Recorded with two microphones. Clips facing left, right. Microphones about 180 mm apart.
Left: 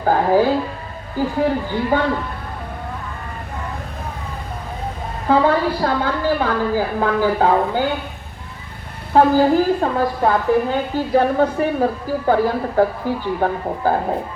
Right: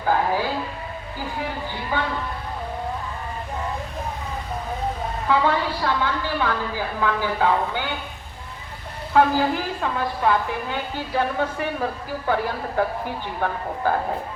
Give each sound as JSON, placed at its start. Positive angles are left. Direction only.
{"t": 0.0, "sound": "a woman's voice", "side_deg": 45}
{"t": 5.3, "sound": "a woman's voice", "side_deg": 40}
{"t": 9.1, "sound": "a woman's voice", "side_deg": 40}